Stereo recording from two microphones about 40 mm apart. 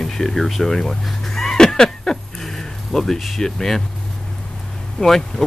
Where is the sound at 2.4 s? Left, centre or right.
Centre.